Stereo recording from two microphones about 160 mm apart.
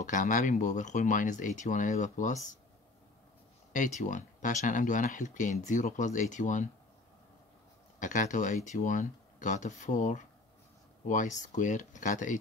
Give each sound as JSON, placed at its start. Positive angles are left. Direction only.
{"t": 0.0, "sound": "speech", "side_deg": 55}
{"t": 3.7, "sound": "speech", "side_deg": 50}
{"t": 8.0, "sound": "speech", "side_deg": 50}